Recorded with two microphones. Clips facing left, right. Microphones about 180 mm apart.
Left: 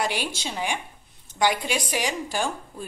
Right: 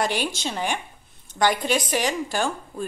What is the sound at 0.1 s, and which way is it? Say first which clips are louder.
A woman's voice: right 3 dB; 10° left (ahead or behind).